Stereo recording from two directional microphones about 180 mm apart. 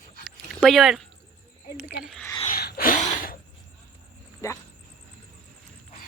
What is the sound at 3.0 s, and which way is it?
Sneeze, 50° left (ahead or behind).